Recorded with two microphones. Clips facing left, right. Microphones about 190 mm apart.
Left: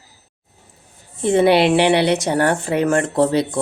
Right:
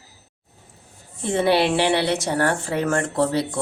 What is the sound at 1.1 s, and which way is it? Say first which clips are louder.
A woman's voice: left 5 dB; 20° left (ahead or behind).